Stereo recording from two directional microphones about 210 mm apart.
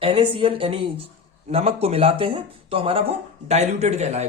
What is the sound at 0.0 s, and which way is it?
A man's voice, 25° right (ahead or behind).